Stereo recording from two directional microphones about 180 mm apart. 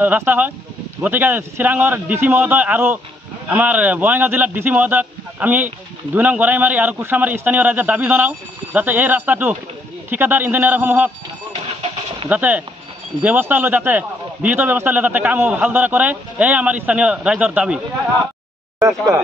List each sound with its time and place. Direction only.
0.0 s a man's voice: 10° right (ahead or behind)
12.3 s a man's voice: 10° right (ahead or behind)
18.8 s a man's voice: 15° right (ahead or behind)